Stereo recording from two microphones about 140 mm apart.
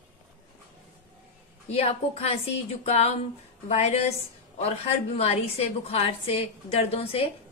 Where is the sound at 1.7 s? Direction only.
45° left (ahead or behind).